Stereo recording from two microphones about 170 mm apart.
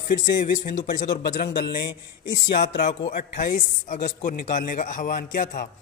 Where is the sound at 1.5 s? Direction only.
80° left.